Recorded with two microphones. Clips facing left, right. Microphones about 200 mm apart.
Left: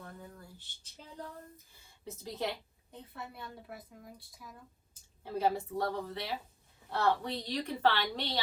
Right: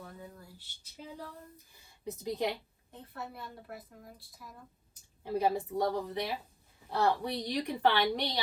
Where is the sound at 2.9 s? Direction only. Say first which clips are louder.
Right 2 dB; centre (ahead or behind).